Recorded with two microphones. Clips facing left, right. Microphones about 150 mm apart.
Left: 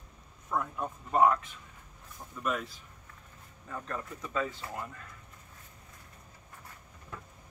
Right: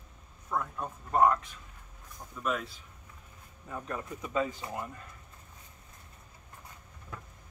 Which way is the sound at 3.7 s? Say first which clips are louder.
Right 1 dB; 15° right (ahead or behind).